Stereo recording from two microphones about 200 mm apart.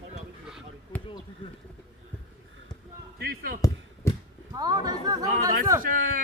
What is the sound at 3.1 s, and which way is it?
Basketball bounce, 50° right (ahead or behind).